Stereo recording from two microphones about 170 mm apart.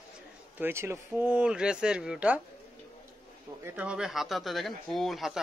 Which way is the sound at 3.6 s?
10° right (ahead or behind).